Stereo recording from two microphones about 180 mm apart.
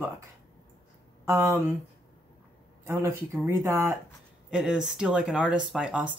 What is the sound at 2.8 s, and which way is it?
Speech, 15° right (ahead or behind).